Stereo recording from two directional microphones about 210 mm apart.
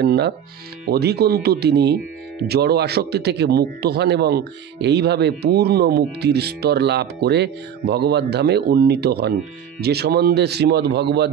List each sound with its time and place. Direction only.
0.0 s speech: 50° right (ahead or behind)